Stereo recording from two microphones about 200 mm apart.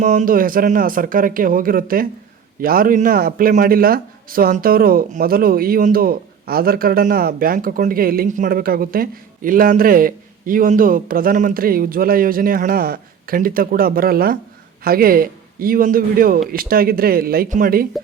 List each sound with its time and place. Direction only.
0.0 s a man's voice: 40° right (ahead or behind)